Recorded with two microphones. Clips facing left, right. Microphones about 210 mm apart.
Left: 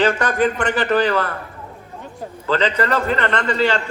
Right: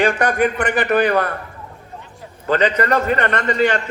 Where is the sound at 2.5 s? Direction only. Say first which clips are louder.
Right 2 dB; 15° right (ahead or behind).